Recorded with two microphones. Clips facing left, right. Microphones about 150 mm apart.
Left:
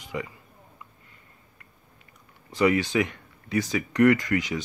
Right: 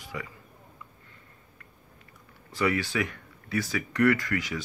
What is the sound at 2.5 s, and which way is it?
Speech, 20° left (ahead or behind).